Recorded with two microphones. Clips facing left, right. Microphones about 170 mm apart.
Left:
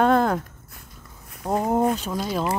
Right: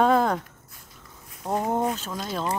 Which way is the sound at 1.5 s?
5° left (ahead or behind).